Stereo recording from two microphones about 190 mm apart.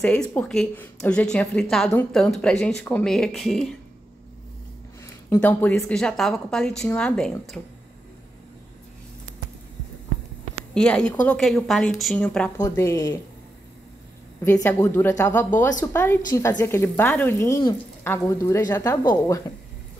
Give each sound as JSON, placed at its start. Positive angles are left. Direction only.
{"t": 0.0, "sound": "a woman's voice", "side_deg": 5}
{"t": 5.0, "sound": "a woman's voice", "side_deg": 10}
{"t": 10.7, "sound": "a woman's voice", "side_deg": 5}
{"t": 12.5, "sound": "speech", "side_deg": 15}
{"t": 14.4, "sound": "speech", "side_deg": 15}